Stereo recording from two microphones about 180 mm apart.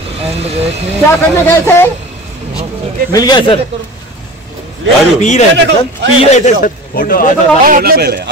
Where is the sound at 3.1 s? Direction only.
25° left (ahead or behind).